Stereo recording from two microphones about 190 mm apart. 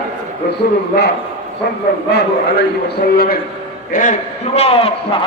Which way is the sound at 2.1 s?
60° left (ahead or behind).